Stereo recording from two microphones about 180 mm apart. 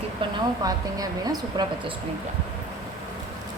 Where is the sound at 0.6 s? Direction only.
20° right (ahead or behind).